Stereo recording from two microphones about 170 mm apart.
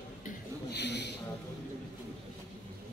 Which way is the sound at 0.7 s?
85° left.